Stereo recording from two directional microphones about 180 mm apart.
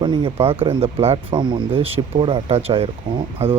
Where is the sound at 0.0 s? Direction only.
25° right (ahead or behind).